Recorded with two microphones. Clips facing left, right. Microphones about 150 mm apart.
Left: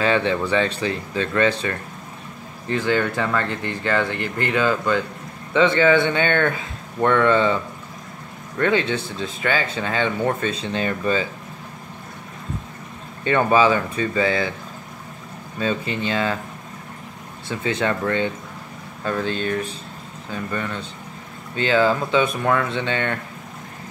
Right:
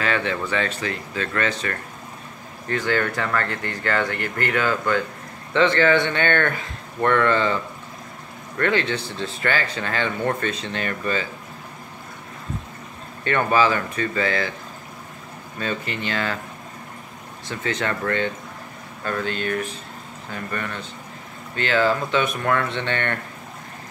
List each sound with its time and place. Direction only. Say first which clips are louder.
0.0 s speech: left 4 dB; 20° left (ahead or behind)
8.5 s speech: left 2 dB; 15° left (ahead or behind)
13.2 s speech: left 3 dB; 15° left (ahead or behind)
15.6 s speech: left 4 dB; 15° left (ahead or behind)
17.7 s speech: left 2 dB; 15° left (ahead or behind)
21.7 s speech: left 2 dB; 15° left (ahead or behind)